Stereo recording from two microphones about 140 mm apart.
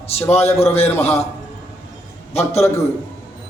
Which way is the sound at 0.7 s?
45° left (ahead or behind).